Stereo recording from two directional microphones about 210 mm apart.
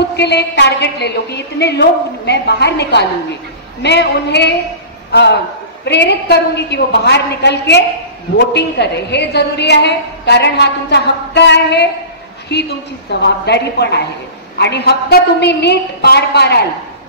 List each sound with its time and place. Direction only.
0.1 s a woman's voice: 55° left (ahead or behind)